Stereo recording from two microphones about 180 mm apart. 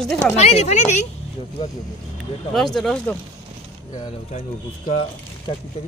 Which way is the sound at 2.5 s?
Centre (ahead or behind).